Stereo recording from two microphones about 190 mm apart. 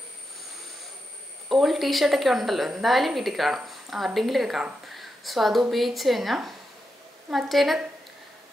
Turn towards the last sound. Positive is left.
turn(degrees=0)  # may be behind; listen again after turning